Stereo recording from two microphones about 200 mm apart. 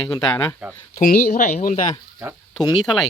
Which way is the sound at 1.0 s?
40° left (ahead or behind).